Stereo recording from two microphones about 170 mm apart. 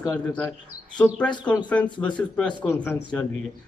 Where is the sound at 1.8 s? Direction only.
25° left (ahead or behind).